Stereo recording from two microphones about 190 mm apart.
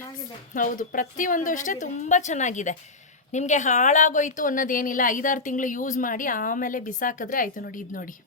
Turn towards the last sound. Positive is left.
turn(degrees=45)  # may be behind; listen again after turning